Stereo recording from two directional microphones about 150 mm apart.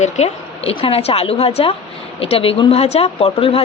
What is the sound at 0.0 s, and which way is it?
Speech, 45° left (ahead or behind).